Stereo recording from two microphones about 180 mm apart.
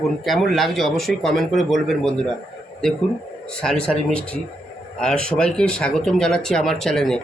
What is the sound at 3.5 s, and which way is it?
Speech, 5° left (ahead or behind).